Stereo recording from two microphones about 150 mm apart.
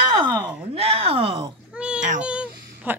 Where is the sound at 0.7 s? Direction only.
40° right (ahead or behind).